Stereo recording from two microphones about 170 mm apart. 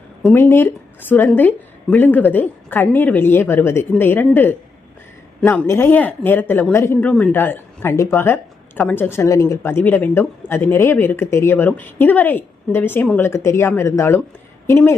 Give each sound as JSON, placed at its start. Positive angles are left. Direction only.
{"t": 0.3, "sound": "speech", "side_deg": 15}